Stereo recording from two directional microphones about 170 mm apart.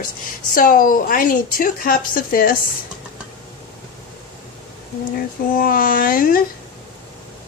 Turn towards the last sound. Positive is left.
turn(degrees=55)  # may be behind; listen again after turning